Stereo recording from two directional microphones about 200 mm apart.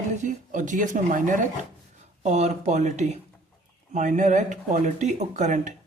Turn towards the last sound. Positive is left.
turn(degrees=-35)  # may be behind; listen again after turning